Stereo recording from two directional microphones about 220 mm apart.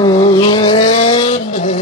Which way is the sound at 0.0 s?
20° left (ahead or behind).